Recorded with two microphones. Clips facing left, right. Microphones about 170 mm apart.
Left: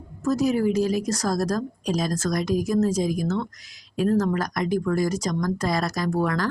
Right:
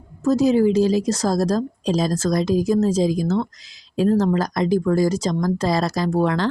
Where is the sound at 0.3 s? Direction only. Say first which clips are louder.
Right 5 dB; 25° right (ahead or behind).